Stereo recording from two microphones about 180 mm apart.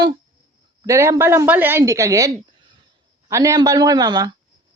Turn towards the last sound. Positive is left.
turn(degrees=-20)  # may be behind; listen again after turning